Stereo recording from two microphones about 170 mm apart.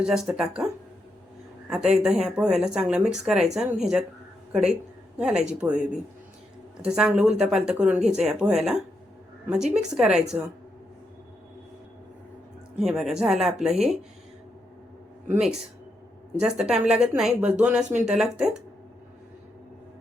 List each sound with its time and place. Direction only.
0.0 s speech: 5° right (ahead or behind)
1.7 s speech: 5° right (ahead or behind)
12.8 s speech: 5° right (ahead or behind)
15.3 s speech: 5° right (ahead or behind)